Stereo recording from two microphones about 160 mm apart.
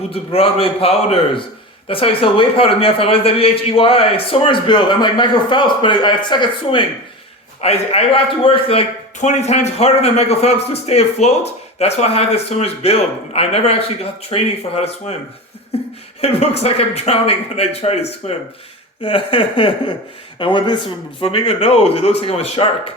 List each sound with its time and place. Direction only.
0.1 s a man's voice: 35° left (ahead or behind)
16.2 s a man's voice: 40° left (ahead or behind)